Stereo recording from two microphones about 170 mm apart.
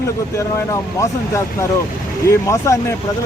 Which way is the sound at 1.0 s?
15° left (ahead or behind).